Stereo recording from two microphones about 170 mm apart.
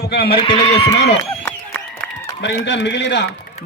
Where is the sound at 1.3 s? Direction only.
10° left (ahead or behind).